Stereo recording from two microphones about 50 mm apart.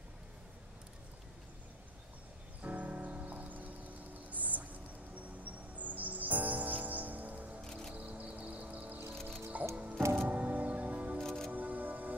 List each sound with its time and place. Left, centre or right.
2.6 s music: right
7.6 s music: centre
7.9 s music: right
9.1 s music: centre
10.1 s music: right
11.2 s music: centre
11.5 s music: right